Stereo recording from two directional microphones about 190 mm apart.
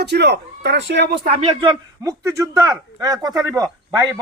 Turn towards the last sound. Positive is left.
turn(degrees=-20)  # may be behind; listen again after turning